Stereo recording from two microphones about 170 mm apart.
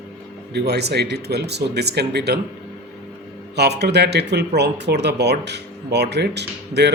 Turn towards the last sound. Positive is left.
turn(degrees=-80)